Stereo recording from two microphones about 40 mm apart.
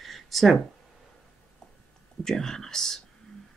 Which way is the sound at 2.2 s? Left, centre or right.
Centre.